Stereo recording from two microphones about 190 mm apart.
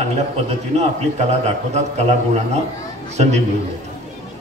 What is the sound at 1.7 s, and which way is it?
Speech, 35° right (ahead or behind).